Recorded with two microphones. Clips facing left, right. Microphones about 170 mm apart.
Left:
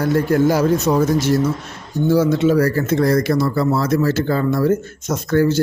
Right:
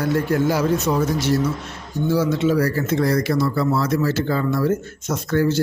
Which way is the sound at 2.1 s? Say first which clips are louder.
Left 4 dB; 45° left (ahead or behind).